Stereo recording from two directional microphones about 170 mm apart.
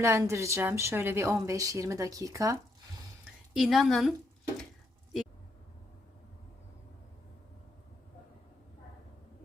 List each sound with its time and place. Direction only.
0.0 s a woman's voice: 15° right (ahead or behind)
3.5 s a woman's voice: centre (ahead or behind)